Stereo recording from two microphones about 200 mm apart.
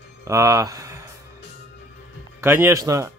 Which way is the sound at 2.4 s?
10° right (ahead or behind).